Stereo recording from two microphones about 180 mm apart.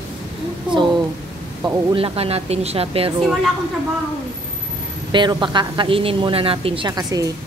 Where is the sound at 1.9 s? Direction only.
30° right (ahead or behind).